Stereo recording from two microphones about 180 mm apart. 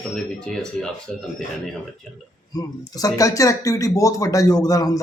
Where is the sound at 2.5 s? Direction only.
20° left (ahead or behind).